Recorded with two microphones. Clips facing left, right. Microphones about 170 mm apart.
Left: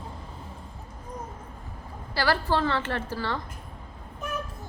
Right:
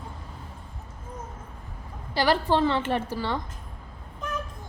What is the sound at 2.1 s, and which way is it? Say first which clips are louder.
A woman's voice: right 3 dB; 20° right (ahead or behind).